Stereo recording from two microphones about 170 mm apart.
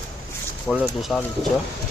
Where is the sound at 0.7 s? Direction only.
Centre (ahead or behind).